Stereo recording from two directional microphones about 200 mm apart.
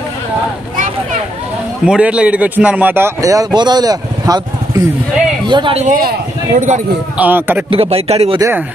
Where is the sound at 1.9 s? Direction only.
5° right (ahead or behind); by 5.9 s 30° right (ahead or behind).